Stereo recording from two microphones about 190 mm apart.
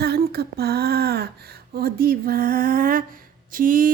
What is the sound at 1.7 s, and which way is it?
Speech, 50° right (ahead or behind).